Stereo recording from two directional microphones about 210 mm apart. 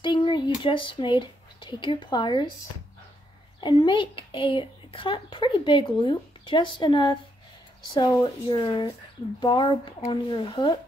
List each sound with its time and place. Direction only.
0.0 s speech: 20° left (ahead or behind)
3.6 s speech: 25° left (ahead or behind)